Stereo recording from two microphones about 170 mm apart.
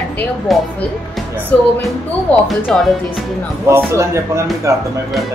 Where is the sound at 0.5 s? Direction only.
Centre (ahead or behind).